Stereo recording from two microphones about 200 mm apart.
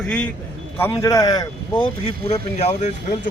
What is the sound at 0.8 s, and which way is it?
Speech, 15° left (ahead or behind).